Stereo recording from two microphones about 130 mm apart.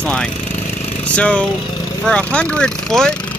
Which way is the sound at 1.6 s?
35° left (ahead or behind).